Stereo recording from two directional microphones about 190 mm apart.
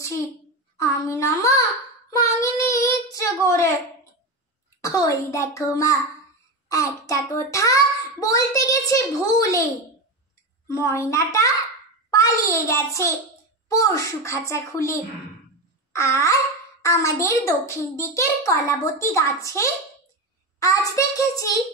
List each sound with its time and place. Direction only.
0.7 s a child's voice: 15° left (ahead or behind)
2.0 s child singing: 15° left (ahead or behind)
4.8 s a child's voice: 15° left (ahead or behind)
10.7 s a child's voice: 15° left (ahead or behind)
15.9 s babbling: 15° left (ahead or behind)
16.8 s a child's voice: 15° left (ahead or behind)